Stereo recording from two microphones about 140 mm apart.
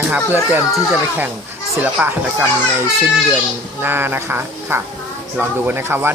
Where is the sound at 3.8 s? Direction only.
15° right (ahead or behind).